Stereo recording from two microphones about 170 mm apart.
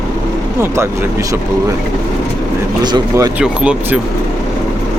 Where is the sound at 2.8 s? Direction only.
25° right (ahead or behind).